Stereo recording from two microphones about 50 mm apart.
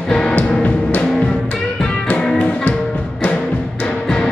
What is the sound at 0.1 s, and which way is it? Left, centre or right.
Music, centre.